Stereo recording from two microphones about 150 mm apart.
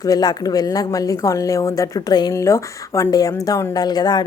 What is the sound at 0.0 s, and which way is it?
Speech, 25° left (ahead or behind).